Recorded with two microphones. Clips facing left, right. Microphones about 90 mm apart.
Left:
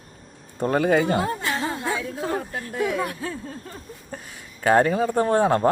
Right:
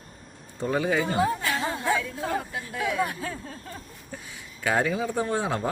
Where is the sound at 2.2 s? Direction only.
45° left (ahead or behind).